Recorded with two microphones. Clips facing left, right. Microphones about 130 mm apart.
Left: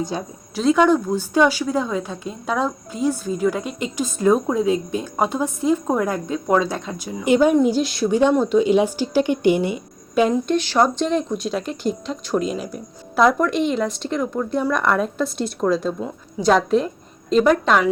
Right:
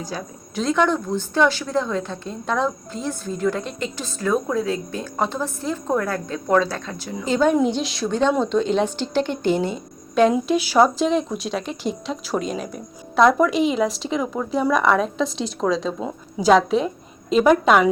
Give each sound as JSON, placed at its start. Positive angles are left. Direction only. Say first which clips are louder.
{"t": 0.1, "sound": "speech", "louder": "left 3 dB", "side_deg": 25}
{"t": 0.5, "sound": "a woman's voice", "louder": "left 4 dB", "side_deg": 5}
{"t": 10.3, "sound": "a woman's voice", "louder": "right 1 dB", "side_deg": -10}